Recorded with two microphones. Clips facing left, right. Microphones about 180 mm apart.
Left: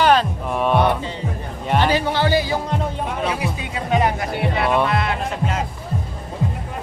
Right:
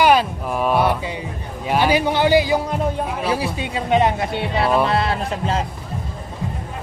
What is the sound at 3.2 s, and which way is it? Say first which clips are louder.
Speech: right 2 dB; 30° right (ahead or behind).